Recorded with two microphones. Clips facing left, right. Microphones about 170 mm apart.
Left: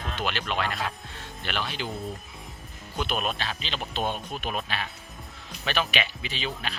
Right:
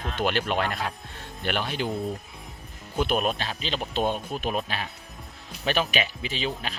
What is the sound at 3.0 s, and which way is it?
Speech, 45° right (ahead or behind).